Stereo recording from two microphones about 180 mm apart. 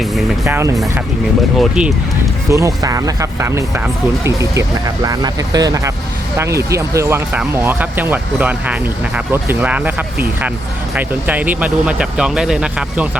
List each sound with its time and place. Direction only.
0.0 s music: centre (ahead or behind)
0.4 s speech: 15° right (ahead or behind)
1.5 s speech: centre (ahead or behind)
2.5 s speech: 15° right (ahead or behind)
10.9 s speech: 10° right (ahead or behind)